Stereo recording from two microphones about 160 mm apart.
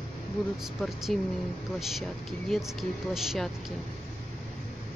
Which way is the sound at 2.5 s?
Centre (ahead or behind).